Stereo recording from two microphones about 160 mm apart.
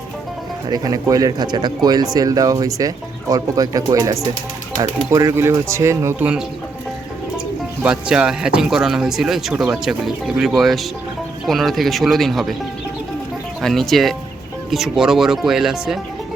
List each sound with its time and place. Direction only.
0.7 s speech: 25° right (ahead or behind); by 12.5 s centre (ahead or behind)
13.6 s speech: centre (ahead or behind)